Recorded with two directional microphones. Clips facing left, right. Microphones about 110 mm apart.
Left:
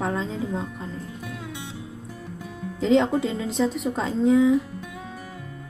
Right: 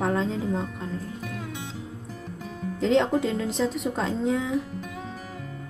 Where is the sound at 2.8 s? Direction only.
Centre (ahead or behind).